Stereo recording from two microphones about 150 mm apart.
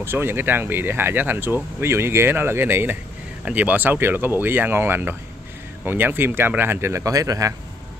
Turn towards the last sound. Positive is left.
turn(degrees=-20)  # may be behind; listen again after turning